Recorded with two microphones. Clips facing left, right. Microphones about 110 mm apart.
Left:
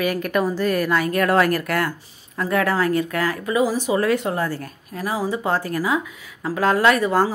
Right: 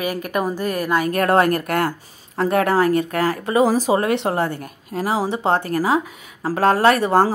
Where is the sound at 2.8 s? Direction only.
45° right (ahead or behind).